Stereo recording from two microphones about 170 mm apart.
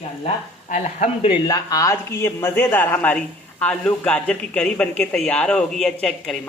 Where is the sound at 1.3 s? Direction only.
25° left (ahead or behind).